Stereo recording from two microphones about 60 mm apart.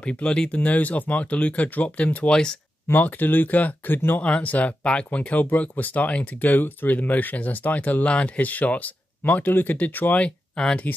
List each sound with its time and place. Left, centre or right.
0.0 s speech: centre
2.3 s speech: centre
2.9 s speech: left
4.2 s speech: left